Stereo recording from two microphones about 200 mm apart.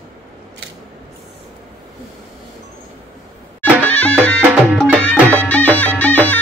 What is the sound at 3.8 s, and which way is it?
Music, 5° left (ahead or behind).